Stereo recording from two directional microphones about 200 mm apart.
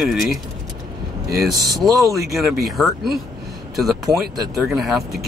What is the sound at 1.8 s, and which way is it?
Speech, centre (ahead or behind).